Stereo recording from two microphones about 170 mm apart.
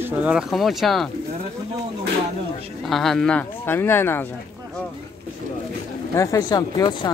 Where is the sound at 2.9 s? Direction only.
Centre (ahead or behind).